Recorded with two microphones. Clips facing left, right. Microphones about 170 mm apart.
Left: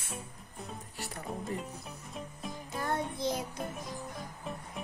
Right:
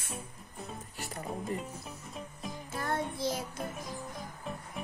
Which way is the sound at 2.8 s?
20° left (ahead or behind).